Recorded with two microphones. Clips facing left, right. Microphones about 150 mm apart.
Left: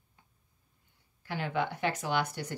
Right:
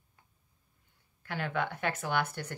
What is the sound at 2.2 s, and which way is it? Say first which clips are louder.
Speech: left 1 dB; 15° left (ahead or behind).